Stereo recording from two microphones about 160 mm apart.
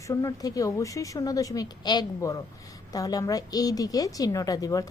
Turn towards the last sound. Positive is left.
turn(degrees=20)  # may be behind; listen again after turning